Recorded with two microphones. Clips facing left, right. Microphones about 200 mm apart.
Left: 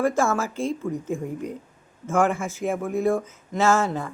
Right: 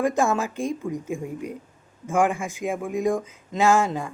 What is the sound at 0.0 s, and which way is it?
Speech, 15° right (ahead or behind).